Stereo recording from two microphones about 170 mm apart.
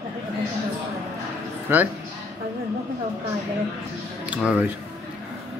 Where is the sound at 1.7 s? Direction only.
10° right (ahead or behind).